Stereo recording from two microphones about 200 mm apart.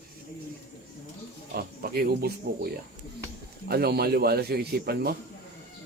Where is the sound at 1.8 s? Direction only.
50° right (ahead or behind).